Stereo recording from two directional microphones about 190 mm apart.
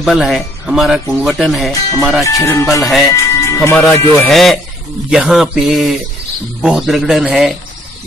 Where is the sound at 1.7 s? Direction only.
20° left (ahead or behind).